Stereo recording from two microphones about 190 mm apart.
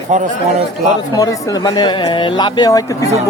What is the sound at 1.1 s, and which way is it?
Speech, 20° left (ahead or behind).